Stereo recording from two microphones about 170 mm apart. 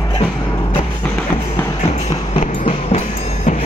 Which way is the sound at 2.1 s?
40° left (ahead or behind).